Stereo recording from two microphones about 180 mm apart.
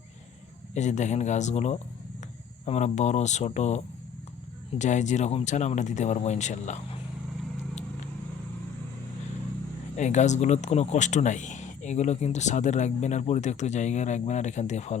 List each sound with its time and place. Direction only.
0.7 s speech: 40° left (ahead or behind)
10.0 s speech: 40° left (ahead or behind)